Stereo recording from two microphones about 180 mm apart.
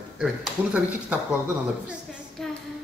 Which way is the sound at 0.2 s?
5° right (ahead or behind).